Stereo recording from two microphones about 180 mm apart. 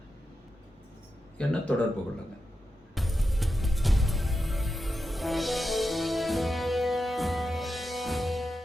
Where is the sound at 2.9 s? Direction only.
Centre (ahead or behind).